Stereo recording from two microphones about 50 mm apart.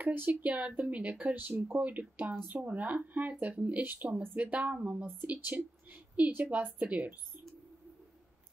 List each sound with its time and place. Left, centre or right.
0.0 s speech: right
0.3 s speech: right